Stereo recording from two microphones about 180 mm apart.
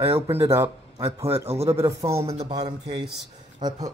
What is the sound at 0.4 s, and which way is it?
Speech, 15° right (ahead or behind).